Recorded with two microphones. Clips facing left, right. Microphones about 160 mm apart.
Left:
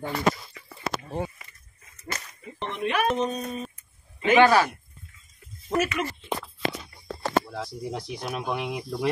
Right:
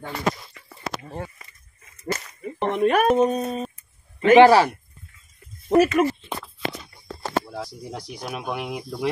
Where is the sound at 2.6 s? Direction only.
50° right (ahead or behind).